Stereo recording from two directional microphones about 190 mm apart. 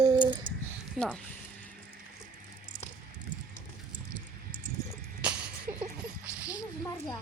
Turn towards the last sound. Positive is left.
turn(degrees=-5)  # may be behind; listen again after turning